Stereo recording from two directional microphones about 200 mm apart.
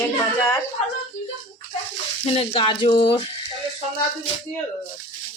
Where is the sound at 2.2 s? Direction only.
25° left (ahead or behind).